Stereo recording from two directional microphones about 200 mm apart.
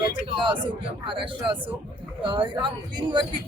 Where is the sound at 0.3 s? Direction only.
25° right (ahead or behind).